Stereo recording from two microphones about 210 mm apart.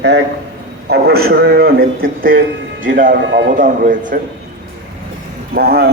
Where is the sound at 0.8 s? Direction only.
50° right (ahead or behind).